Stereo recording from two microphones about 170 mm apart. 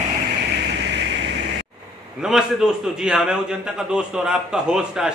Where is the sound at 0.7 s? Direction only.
90° right.